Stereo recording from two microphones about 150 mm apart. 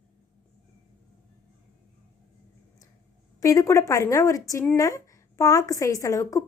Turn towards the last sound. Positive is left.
turn(degrees=20)  # may be behind; listen again after turning